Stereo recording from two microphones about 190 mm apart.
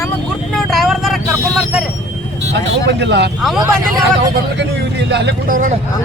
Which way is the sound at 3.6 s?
20° right (ahead or behind).